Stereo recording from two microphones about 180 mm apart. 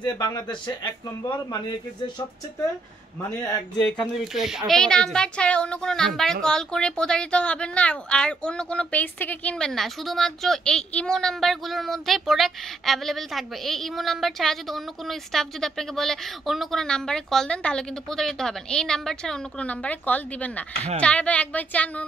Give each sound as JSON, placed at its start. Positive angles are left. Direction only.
{"t": 0.0, "sound": "a woman's voice", "side_deg": 25}
{"t": 4.2, "sound": "a child's voice", "side_deg": 0}